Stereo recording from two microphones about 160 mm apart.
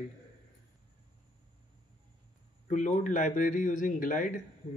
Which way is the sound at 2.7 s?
50° left (ahead or behind).